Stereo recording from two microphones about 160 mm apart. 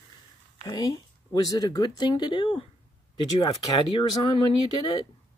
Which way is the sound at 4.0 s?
30° left (ahead or behind).